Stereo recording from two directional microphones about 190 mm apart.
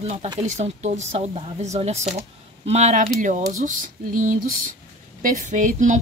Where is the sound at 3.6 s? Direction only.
45° right (ahead or behind).